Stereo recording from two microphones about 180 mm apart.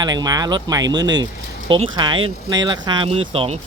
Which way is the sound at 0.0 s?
20° right (ahead or behind).